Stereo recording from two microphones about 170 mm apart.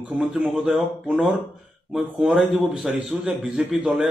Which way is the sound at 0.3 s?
5° right (ahead or behind).